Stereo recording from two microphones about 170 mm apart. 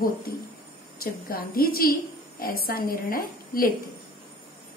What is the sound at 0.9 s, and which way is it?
A woman's voice, 60° left (ahead or behind).